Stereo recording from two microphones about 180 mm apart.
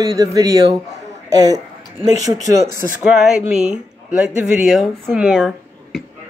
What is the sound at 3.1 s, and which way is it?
Speech, 5° right (ahead or behind).